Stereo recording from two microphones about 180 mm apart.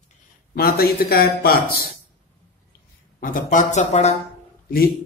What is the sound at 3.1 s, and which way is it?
Speech, 45° left (ahead or behind).